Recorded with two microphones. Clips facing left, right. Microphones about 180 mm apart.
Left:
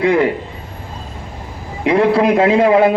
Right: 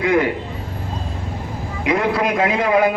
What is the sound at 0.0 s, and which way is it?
Speech, 30° left (ahead or behind).